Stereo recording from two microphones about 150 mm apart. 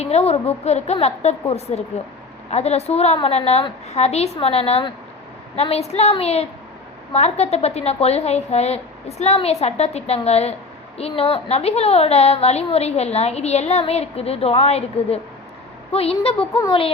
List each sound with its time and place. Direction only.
0.0 s a woman's voice: 45° left (ahead or behind)